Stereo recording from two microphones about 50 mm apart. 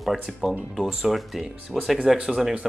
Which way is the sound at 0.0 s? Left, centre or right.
Centre.